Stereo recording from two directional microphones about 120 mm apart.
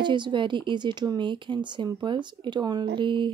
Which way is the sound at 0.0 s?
40° right (ahead or behind).